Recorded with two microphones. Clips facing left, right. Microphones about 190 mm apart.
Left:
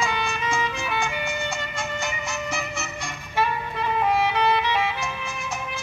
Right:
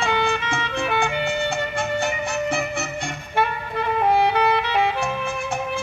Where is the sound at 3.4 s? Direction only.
60° right (ahead or behind).